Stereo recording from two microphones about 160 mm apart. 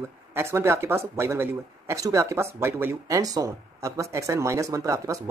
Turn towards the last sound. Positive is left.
turn(degrees=-20)  # may be behind; listen again after turning